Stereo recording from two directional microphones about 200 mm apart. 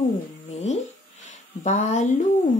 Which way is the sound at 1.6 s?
35° left (ahead or behind).